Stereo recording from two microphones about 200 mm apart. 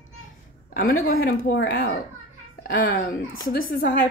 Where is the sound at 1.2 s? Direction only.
55° left (ahead or behind).